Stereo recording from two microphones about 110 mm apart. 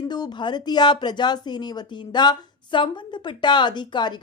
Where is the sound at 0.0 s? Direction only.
40° left (ahead or behind).